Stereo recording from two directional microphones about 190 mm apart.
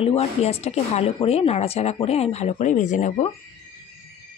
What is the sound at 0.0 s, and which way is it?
Speech, 30° left (ahead or behind).